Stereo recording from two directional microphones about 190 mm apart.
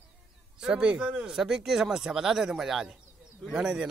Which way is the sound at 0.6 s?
5° right (ahead or behind).